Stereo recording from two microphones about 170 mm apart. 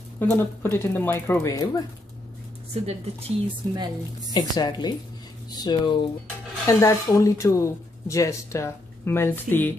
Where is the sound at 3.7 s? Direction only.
25° right (ahead or behind).